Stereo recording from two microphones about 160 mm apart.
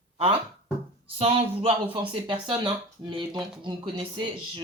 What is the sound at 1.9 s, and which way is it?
Speech, 35° right (ahead or behind).